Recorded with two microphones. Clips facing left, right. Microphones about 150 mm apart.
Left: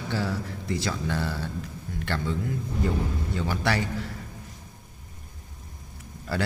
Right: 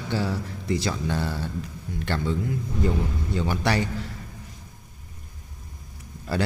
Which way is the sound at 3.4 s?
20° right (ahead or behind).